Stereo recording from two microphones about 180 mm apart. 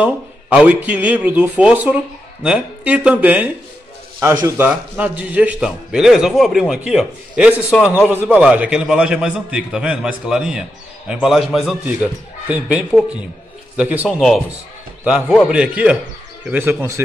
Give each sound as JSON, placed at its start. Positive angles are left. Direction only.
{"t": 0.0, "sound": "a man's voice", "side_deg": -10}